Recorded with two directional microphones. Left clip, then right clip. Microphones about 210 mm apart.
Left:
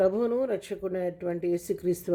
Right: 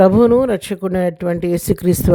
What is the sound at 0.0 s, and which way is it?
Speech, 45° right (ahead or behind).